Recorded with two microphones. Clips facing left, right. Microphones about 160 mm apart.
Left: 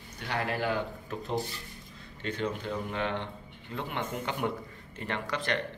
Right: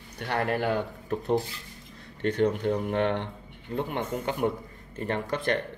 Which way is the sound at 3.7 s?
45° right (ahead or behind).